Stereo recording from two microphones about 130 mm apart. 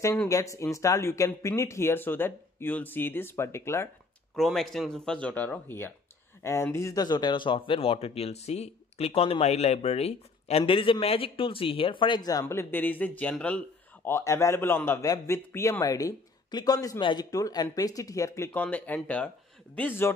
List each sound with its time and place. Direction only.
0.3 s speech: 25° left (ahead or behind)
4.4 s speech: centre (ahead or behind)
14.0 s speech: 20° left (ahead or behind)